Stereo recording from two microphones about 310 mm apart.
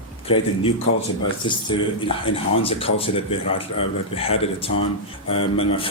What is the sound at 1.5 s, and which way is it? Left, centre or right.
Speech, centre.